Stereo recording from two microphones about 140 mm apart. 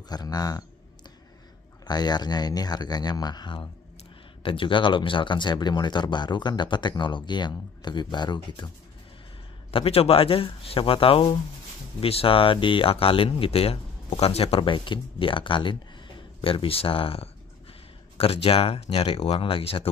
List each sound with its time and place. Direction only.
0.1 s speech: 30° left (ahead or behind)
1.9 s speech: 30° left (ahead or behind)
9.7 s speech: 40° left (ahead or behind)